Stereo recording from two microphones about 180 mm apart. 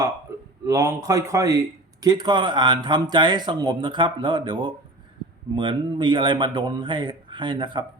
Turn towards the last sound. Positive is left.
turn(degrees=-25)  # may be behind; listen again after turning